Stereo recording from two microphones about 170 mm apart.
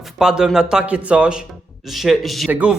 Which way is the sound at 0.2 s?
5° right (ahead or behind).